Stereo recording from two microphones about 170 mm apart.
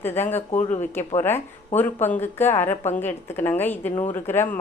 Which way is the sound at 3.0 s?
10° left (ahead or behind).